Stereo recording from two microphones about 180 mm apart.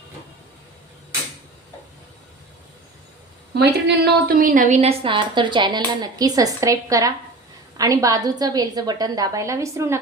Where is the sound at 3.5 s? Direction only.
70° right (ahead or behind).